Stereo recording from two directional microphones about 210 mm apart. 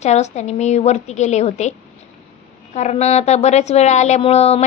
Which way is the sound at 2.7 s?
30° left (ahead or behind).